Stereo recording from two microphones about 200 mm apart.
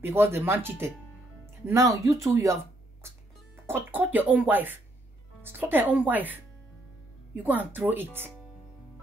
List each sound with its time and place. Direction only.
0.0 s speech: 10° right (ahead or behind)
7.4 s speech: 10° right (ahead or behind)